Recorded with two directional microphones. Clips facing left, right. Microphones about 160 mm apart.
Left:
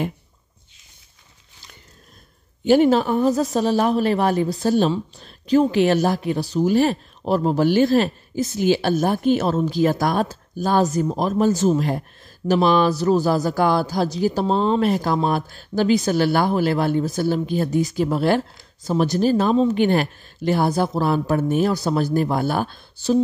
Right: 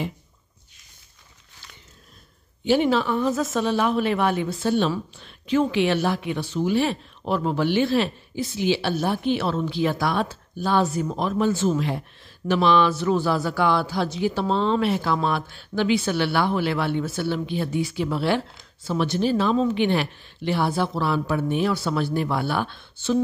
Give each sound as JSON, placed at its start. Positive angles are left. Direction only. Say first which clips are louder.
{"t": 2.6, "sound": "speech", "louder": "left 5 dB", "side_deg": 45}